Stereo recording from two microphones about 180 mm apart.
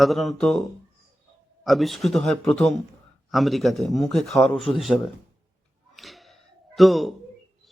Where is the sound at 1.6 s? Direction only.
Centre (ahead or behind).